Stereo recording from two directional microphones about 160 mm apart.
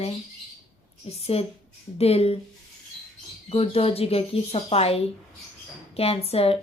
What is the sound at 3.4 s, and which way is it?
A woman's voice, 35° left (ahead or behind).